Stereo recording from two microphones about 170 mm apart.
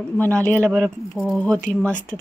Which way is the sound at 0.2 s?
10° left (ahead or behind).